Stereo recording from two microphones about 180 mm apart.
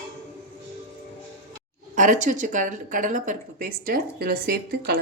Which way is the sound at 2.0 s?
45° right (ahead or behind).